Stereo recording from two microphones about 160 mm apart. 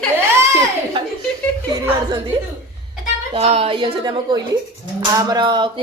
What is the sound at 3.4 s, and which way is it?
A woman's voice, 40° right (ahead or behind).